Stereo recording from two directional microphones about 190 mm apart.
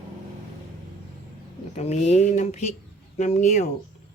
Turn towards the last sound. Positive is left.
turn(degrees=40)  # may be behind; listen again after turning